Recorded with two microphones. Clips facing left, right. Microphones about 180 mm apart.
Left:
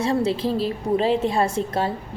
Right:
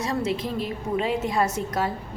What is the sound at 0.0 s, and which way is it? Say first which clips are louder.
A woman's voice: left 5 dB; 30° left (ahead or behind).